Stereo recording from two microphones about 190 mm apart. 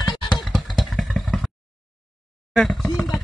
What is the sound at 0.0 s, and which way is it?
Vehicle, 25° left (ahead or behind).